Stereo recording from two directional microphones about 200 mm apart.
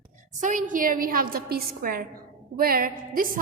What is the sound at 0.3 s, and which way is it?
A woman's voice, 40° right (ahead or behind).